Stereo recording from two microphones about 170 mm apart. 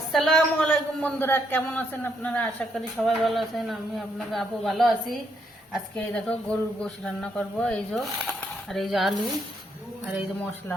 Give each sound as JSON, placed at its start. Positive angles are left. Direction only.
{"t": 0.1, "sound": "a man's voice", "side_deg": 0}